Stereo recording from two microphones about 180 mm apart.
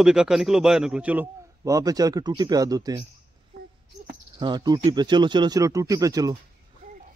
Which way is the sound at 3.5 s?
60° right (ahead or behind).